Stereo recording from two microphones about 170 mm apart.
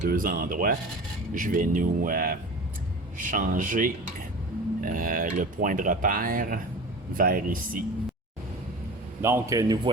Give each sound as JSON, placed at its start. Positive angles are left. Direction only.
{"t": 0.0, "sound": "speech", "side_deg": -55}
{"t": 9.2, "sound": "speech", "side_deg": -15}